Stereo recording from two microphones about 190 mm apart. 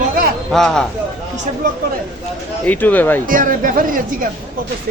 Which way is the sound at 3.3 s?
45° right (ahead or behind).